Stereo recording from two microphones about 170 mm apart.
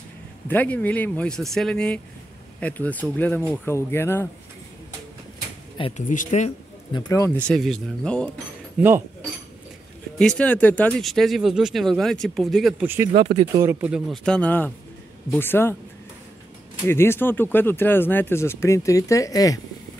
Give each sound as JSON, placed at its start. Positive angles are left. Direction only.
{"t": 0.5, "sound": "speech", "side_deg": 10}
{"t": 5.9, "sound": "speech", "side_deg": 45}
{"t": 6.9, "sound": "speech", "side_deg": 20}
{"t": 8.7, "sound": "speech", "side_deg": -10}
{"t": 10.1, "sound": "speech", "side_deg": 5}
{"t": 12.8, "sound": "speech", "side_deg": -15}
{"t": 13.1, "sound": "speech", "side_deg": -35}
{"t": 13.6, "sound": "speech", "side_deg": -15}
{"t": 16.8, "sound": "speech", "side_deg": 15}